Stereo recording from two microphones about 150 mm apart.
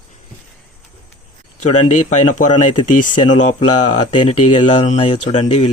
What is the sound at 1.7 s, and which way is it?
Speech, 55° left (ahead or behind).